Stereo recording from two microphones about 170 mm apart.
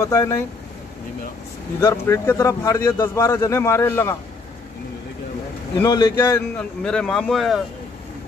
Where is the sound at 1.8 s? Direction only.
15° left (ahead or behind).